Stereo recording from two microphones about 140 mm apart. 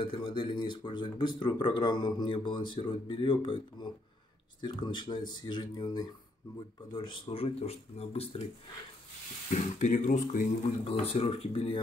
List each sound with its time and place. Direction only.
0.0 s speech: 35° left (ahead or behind)
9.5 s speech: 60° left (ahead or behind)
10.6 s speech: 45° left (ahead or behind)